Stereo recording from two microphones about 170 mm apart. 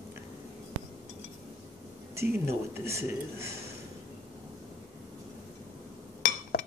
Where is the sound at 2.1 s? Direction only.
15° right (ahead or behind).